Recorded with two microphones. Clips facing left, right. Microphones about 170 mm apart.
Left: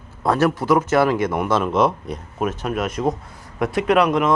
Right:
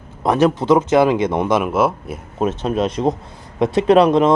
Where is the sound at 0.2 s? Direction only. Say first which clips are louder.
Right 3 dB; 20° right (ahead or behind).